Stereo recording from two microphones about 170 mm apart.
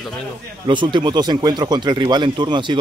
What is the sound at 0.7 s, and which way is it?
Speech, 30° right (ahead or behind).